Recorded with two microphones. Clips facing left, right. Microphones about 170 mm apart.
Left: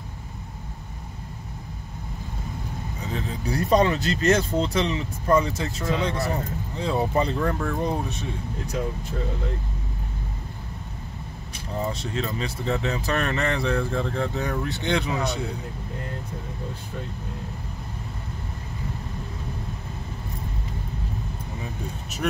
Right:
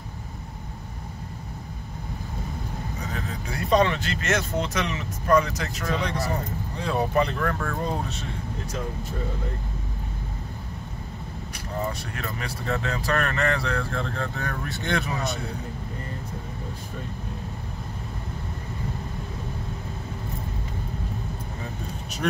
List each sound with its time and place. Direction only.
3.1 s speech: 35° left (ahead or behind); by 8.3 s 15° left (ahead or behind)
11.8 s speech: 20° left (ahead or behind)
22.2 s speech: 5° left (ahead or behind)